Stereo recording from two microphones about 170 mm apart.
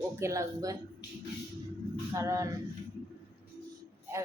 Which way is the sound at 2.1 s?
20° right (ahead or behind).